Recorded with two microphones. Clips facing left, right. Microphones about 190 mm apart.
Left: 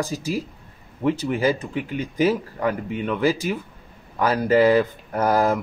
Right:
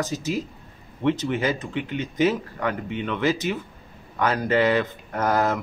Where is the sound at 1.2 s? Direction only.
35° left (ahead or behind).